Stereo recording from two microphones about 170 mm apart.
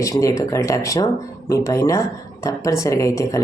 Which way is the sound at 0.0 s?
20° left (ahead or behind).